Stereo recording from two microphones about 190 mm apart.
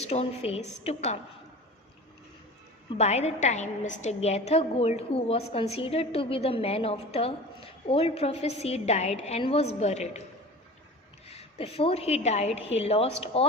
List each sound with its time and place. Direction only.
0.0 s a woman's voice: 35° left (ahead or behind)
2.9 s a woman's voice: 35° left (ahead or behind)
11.3 s a woman's voice: 30° left (ahead or behind)